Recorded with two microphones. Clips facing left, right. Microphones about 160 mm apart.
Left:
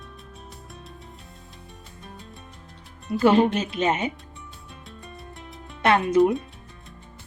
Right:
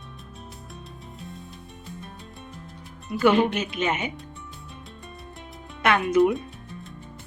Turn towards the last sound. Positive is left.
turn(degrees=35)  # may be behind; listen again after turning